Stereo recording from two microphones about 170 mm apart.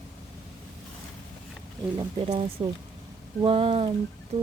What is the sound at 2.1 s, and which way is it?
Speech, 35° right (ahead or behind).